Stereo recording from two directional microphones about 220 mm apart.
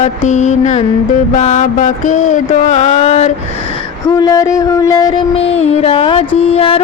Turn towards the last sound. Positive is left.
turn(degrees=25)  # may be behind; listen again after turning